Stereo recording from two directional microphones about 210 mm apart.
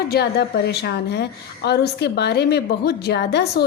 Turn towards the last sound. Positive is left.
turn(degrees=50)  # may be behind; listen again after turning